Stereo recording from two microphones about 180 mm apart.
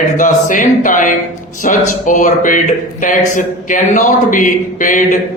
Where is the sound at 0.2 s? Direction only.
45° left (ahead or behind).